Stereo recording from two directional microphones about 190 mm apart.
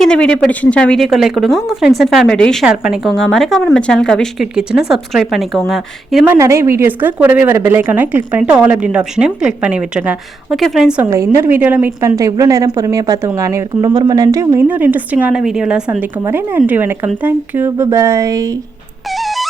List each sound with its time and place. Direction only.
0.0 s a woman's voice: 5° left (ahead or behind)
6.3 s a woman's voice: 15° right (ahead or behind)
19.1 s music: centre (ahead or behind)